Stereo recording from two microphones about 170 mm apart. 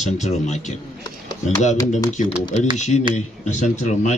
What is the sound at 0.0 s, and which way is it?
Speech, 45° left (ahead or behind).